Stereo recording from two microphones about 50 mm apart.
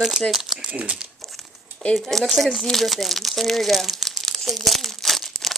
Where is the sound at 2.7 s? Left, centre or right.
Centre.